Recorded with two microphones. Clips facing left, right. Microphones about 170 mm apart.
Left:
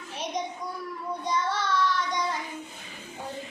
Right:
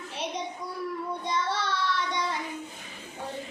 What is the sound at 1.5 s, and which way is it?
Child singing, 30° right (ahead or behind).